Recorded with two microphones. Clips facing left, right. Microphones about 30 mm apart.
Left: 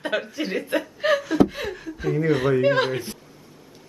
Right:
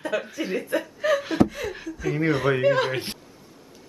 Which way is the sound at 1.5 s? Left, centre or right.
Left.